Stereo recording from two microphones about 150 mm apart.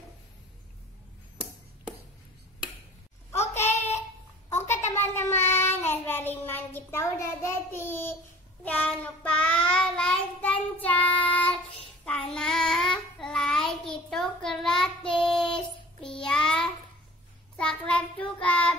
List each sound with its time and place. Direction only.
3.5 s child singing: 15° left (ahead or behind)
4.5 s a sound: 20° left (ahead or behind)
5.1 s child singing: 15° left (ahead or behind)